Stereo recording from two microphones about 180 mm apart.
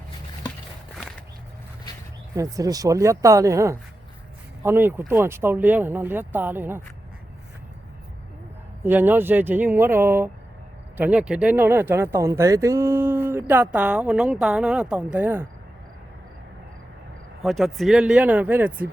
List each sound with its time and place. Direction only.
2.3 s speech: 20° right (ahead or behind)
8.8 s speech: 10° right (ahead or behind)
17.4 s speech: centre (ahead or behind)